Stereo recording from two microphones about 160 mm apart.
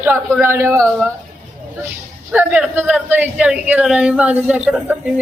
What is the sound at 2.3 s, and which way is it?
Speech, 10° right (ahead or behind).